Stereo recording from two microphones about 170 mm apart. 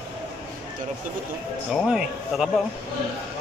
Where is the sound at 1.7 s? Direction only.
5° right (ahead or behind).